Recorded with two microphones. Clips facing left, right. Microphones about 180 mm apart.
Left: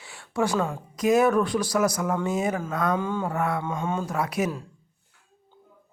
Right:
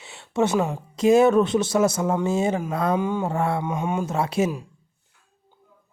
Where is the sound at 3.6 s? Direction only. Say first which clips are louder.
Right 3 dB; 20° right (ahead or behind).